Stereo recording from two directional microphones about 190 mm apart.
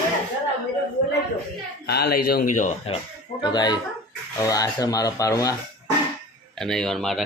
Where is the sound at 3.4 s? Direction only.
20° left (ahead or behind).